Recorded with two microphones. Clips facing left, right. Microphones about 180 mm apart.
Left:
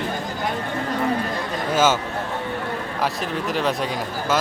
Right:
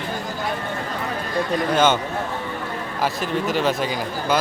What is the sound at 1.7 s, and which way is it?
Speech, 5° left (ahead or behind).